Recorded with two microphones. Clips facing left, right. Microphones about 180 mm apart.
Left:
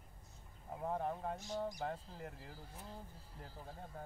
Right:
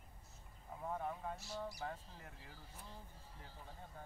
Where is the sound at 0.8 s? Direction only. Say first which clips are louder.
Left 4 dB; 40° left (ahead or behind).